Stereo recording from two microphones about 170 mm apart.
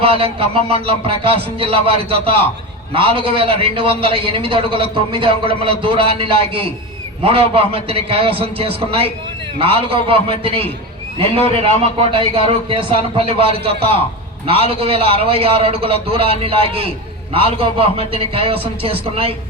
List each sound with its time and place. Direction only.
0.0 s a man's voice: 35° right (ahead or behind)